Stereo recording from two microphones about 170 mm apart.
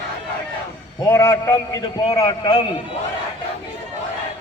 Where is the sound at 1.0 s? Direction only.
20° left (ahead or behind).